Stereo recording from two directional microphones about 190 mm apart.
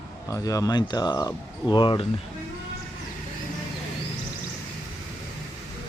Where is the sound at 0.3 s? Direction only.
15° left (ahead or behind).